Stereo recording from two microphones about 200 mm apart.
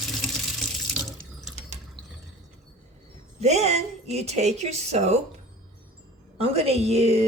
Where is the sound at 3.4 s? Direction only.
35° right (ahead or behind).